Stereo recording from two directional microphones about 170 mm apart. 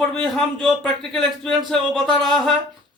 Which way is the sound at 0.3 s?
Centre (ahead or behind).